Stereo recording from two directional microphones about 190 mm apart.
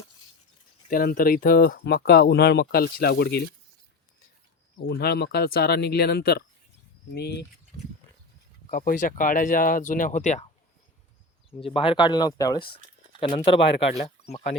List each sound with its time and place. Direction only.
0.9 s speech: 45° left (ahead or behind)
4.9 s speech: 55° left (ahead or behind)
8.7 s speech: 45° left (ahead or behind)
11.6 s speech: 30° left (ahead or behind)